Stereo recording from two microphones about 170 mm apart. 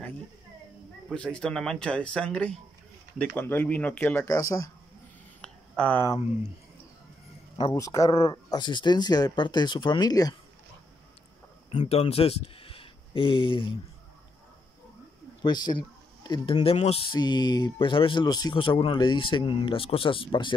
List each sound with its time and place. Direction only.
1.1 s speech: 5° left (ahead or behind)
5.4 s a sound: 10° left (ahead or behind)
7.5 s speech: 25° left (ahead or behind)
11.7 s speech: 40° left (ahead or behind)
15.4 s speech: 25° left (ahead or behind)